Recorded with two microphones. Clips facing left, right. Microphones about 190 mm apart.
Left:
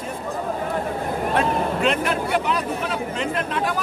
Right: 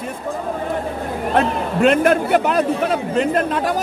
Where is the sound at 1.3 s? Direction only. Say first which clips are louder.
Right 5 dB; 50° right (ahead or behind).